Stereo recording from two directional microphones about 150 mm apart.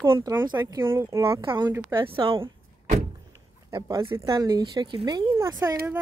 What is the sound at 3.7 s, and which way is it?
Speech, 30° right (ahead or behind).